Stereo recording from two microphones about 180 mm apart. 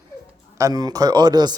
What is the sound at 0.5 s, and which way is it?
Speech, 20° right (ahead or behind).